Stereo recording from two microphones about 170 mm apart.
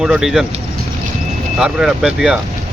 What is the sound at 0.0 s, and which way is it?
Speech, 5° right (ahead or behind).